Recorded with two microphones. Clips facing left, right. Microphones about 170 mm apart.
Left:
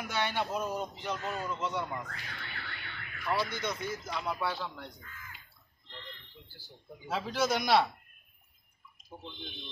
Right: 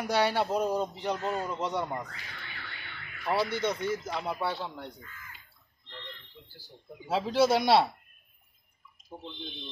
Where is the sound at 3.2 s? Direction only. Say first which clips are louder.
Right 4 dB; 30° right (ahead or behind).